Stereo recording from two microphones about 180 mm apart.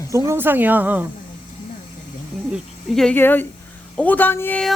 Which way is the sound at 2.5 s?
5° left (ahead or behind).